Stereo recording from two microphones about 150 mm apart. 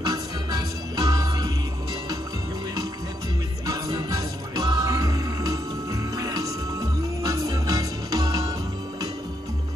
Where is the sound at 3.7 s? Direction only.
25° right (ahead or behind).